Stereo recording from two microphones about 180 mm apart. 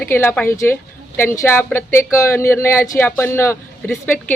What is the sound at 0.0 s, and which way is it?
Speech, 10° left (ahead or behind).